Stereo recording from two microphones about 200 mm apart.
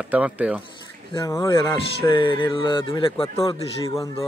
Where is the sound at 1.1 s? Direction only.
15° left (ahead or behind).